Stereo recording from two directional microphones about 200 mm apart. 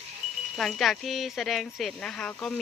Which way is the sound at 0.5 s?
Centre (ahead or behind).